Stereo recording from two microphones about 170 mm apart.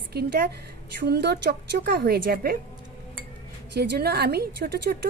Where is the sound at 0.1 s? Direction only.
70° right (ahead or behind).